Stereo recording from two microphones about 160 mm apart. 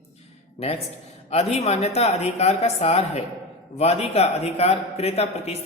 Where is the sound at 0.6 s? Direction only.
40° left (ahead or behind).